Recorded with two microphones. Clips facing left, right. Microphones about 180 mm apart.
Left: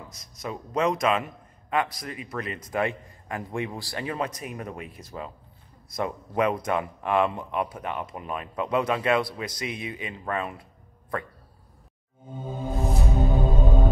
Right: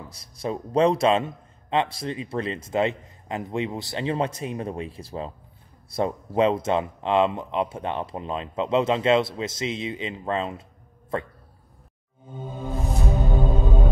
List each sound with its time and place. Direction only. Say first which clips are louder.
0.1 s speech: right 7 dB; 30° right (ahead or behind)
13.0 s music: right 2 dB; centre (ahead or behind)